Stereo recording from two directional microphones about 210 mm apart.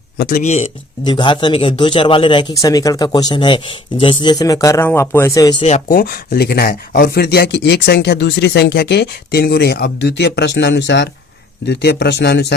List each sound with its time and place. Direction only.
0.2 s speech: 40° left (ahead or behind); by 5.6 s 15° left (ahead or behind)
5.6 s speech: 35° left (ahead or behind); by 12.5 s 55° left (ahead or behind)